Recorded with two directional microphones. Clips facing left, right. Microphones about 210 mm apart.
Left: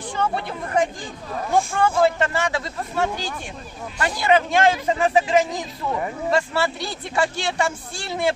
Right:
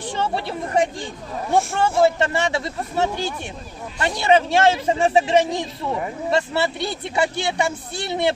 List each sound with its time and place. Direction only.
0.1 s speech: 30° right (ahead or behind)